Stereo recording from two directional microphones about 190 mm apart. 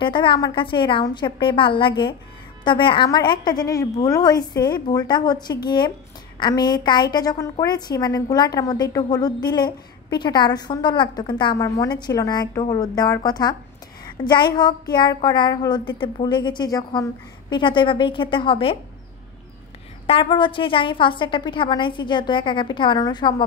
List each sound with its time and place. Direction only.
0.0 s a woman's voice: 25° left (ahead or behind)
20.1 s a woman's voice: 25° left (ahead or behind)